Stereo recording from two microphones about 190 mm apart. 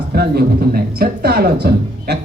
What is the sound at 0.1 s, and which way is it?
Speech, 55° right (ahead or behind).